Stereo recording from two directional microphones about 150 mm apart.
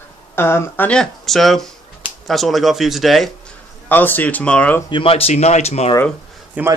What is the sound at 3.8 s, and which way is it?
Speech, 15° left (ahead or behind).